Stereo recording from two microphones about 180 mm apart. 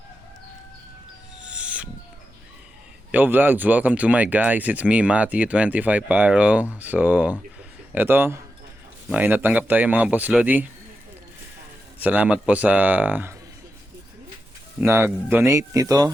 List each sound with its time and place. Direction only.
1.4 s owl: 5° right (ahead or behind)
3.1 s speech: 10° right (ahead or behind)
12.0 s speech: 10° right (ahead or behind)
14.8 s speech: 15° right (ahead or behind)